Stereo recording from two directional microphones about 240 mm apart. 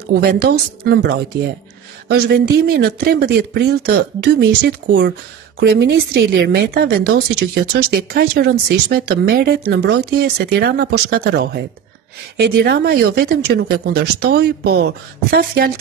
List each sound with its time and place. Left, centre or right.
0.1 s speech: right